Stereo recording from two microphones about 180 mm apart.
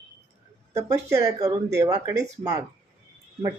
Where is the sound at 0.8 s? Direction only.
15° right (ahead or behind).